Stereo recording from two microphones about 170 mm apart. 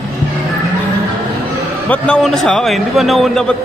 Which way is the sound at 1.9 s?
5° left (ahead or behind).